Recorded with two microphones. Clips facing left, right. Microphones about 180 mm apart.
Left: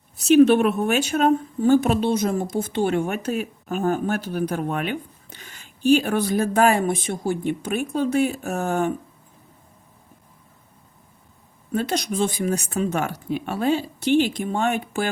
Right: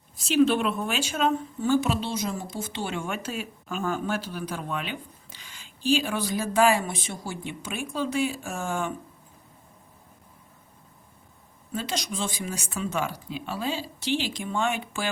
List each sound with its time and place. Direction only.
0.3 s a woman's voice: 60° left (ahead or behind)
11.7 s a woman's voice: 60° left (ahead or behind)